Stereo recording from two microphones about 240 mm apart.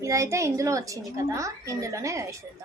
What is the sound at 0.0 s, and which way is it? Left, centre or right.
A woman's voice, centre.